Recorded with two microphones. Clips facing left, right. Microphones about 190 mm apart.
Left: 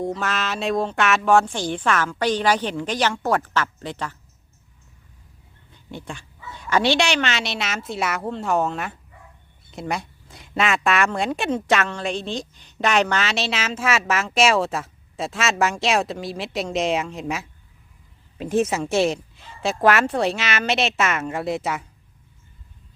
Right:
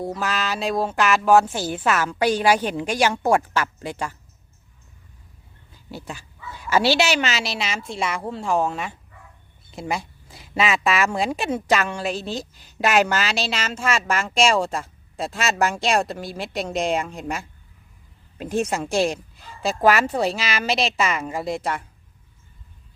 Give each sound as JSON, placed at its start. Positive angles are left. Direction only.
{"t": 0.0, "sound": "a woman's voice", "side_deg": -5}
{"t": 5.7, "sound": "speech", "side_deg": -5}